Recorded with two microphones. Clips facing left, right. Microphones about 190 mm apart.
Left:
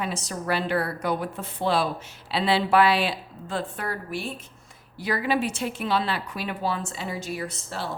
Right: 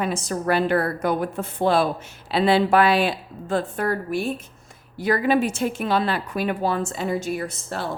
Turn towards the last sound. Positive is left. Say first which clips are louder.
# right 4 dB
turn(degrees=-50)  # may be behind; listen again after turning